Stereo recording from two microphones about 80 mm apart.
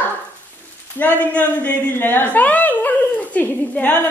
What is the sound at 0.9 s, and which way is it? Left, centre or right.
A woman's voice, left.